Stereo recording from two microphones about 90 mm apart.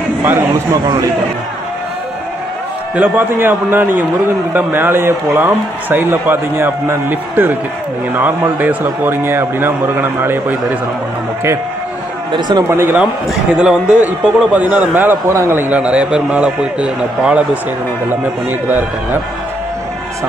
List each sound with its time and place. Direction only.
3.0 s a man's voice: 25° right (ahead or behind)
8.5 s a man's voice: 20° right (ahead or behind)
12.3 s speech: 55° right (ahead or behind)
12.6 s a man's voice: 25° right (ahead or behind)
13.0 s a man's voice: 10° right (ahead or behind)